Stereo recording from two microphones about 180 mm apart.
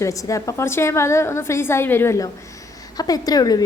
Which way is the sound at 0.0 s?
20° left (ahead or behind).